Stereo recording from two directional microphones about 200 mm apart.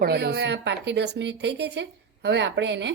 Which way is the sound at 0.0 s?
50° right (ahead or behind).